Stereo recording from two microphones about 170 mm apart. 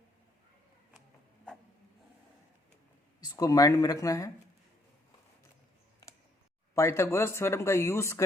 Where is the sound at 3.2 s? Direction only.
20° left (ahead or behind).